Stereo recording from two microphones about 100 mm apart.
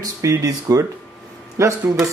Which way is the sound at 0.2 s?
35° right (ahead or behind).